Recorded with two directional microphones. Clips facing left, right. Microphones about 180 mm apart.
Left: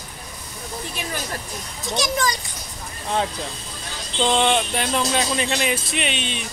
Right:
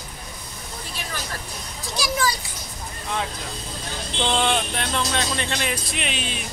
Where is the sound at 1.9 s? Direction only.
5° right (ahead or behind).